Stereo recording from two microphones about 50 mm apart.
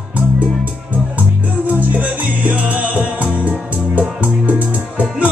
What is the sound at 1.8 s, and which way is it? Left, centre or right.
Music, right.